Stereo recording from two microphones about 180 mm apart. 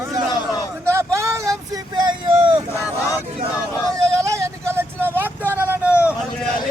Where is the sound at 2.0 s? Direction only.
25° right (ahead or behind).